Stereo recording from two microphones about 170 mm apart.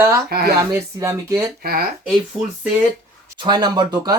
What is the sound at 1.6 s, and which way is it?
Speech, 60° right (ahead or behind).